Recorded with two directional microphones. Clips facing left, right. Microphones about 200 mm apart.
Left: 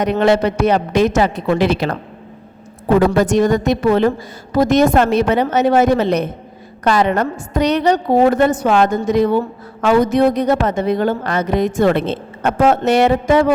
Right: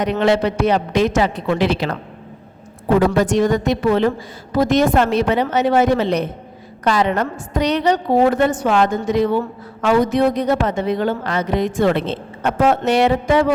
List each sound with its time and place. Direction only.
0.0 s a woman's voice: 45° left (ahead or behind)
3.2 s a woman's voice: 45° left (ahead or behind)